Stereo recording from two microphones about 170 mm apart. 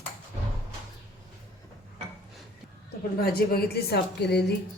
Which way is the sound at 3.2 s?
65° left (ahead or behind).